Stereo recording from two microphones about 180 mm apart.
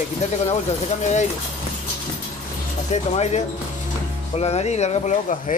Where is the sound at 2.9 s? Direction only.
40° left (ahead or behind).